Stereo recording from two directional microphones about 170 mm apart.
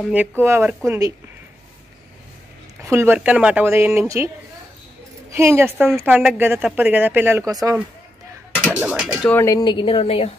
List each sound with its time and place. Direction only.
0.1 s speech: 10° right (ahead or behind)
2.8 s speech: 15° right (ahead or behind)
5.3 s speech: 15° right (ahead or behind)
8.7 s speech: 5° right (ahead or behind)
9.3 s speech: 15° left (ahead or behind); by 10.3 s 35° left (ahead or behind)